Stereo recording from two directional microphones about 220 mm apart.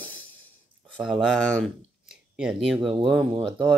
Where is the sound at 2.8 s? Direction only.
20° right (ahead or behind).